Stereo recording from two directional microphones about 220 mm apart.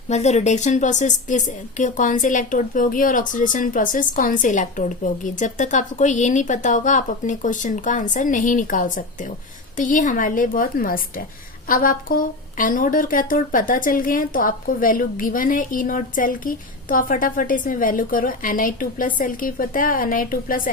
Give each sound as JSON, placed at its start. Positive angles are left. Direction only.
{"t": 0.1, "sound": "a woman's voice", "side_deg": 30}